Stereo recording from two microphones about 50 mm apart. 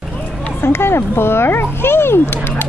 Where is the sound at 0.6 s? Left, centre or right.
Left.